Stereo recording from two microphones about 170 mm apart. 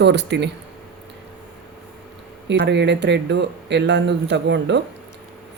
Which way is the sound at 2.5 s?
90° right.